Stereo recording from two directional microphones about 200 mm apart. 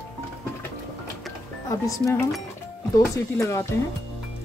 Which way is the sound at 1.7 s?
15° left (ahead or behind).